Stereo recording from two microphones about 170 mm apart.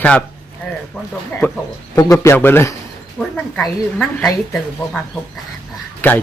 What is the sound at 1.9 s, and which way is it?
Speech, 15° left (ahead or behind).